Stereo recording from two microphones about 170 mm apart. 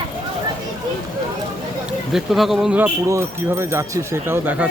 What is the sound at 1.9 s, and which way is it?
Speech, centre (ahead or behind).